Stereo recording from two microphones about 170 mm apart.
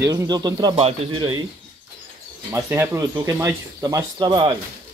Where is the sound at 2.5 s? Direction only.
15° right (ahead or behind).